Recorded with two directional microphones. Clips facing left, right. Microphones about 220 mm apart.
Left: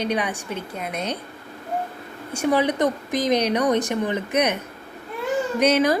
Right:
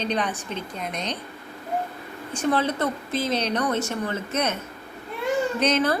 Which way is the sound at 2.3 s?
10° left (ahead or behind).